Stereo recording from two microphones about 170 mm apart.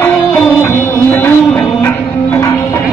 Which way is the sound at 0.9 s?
10° left (ahead or behind).